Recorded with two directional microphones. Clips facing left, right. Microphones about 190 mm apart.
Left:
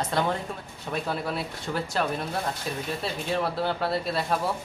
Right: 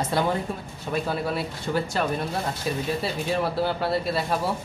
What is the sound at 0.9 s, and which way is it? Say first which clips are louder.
Speech: right 3 dB; centre (ahead or behind).